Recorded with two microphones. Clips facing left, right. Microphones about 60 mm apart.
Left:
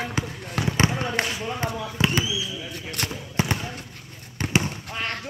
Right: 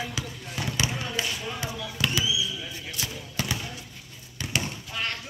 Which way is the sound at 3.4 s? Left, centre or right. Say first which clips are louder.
Left 6 dB; left.